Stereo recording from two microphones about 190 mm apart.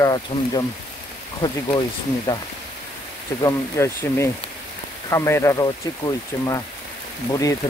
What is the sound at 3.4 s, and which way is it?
Speech, 15° left (ahead or behind).